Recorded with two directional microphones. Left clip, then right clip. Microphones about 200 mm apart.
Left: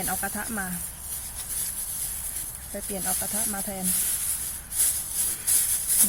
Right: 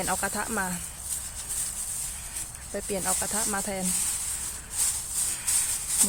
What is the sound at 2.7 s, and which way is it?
Speech, 55° right (ahead or behind).